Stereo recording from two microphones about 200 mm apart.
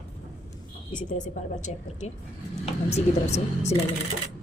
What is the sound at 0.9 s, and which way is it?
A woman's voice, 40° left (ahead or behind).